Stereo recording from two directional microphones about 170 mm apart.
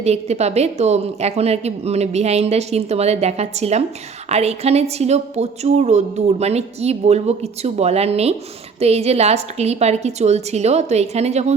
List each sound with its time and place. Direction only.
0.0 s a woman's voice: 40° right (ahead or behind)